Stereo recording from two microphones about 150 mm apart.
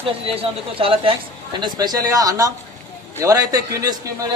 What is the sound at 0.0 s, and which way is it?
Speech, 40° right (ahead or behind).